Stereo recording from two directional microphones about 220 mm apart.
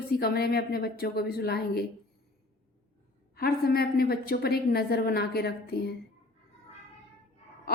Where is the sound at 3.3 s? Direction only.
45° left (ahead or behind).